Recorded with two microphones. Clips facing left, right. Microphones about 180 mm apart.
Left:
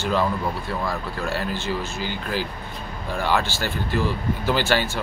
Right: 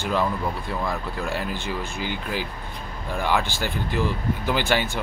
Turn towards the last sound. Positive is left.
turn(degrees=-15)  # may be behind; listen again after turning